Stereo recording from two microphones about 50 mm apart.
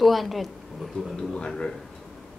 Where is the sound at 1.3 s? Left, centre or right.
Centre.